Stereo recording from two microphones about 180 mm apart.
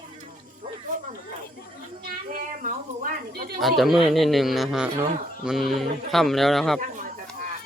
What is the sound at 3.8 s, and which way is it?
Speech, centre (ahead or behind).